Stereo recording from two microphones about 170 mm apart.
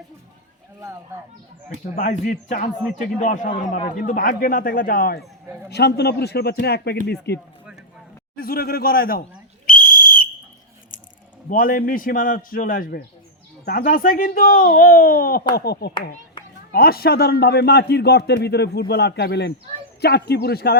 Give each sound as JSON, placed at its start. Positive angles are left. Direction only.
{"t": 2.0, "sound": "a man's voice", "side_deg": 50}
{"t": 5.7, "sound": "a man's voice", "side_deg": 75}
{"t": 8.4, "sound": "speech", "side_deg": 60}
{"t": 9.6, "sound": "whistle", "side_deg": 55}
{"t": 11.4, "sound": "speech", "side_deg": 55}
{"t": 15.5, "sound": "a man's voice", "side_deg": 70}